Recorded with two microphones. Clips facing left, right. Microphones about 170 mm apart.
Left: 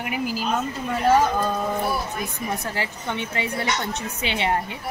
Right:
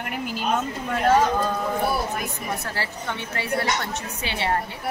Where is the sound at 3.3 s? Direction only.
20° left (ahead or behind).